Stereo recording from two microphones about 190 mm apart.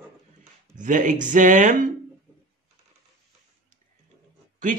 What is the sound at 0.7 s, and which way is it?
Speech, 40° right (ahead or behind).